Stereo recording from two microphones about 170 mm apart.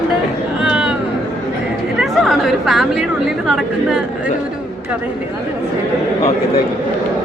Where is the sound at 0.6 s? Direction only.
5° right (ahead or behind).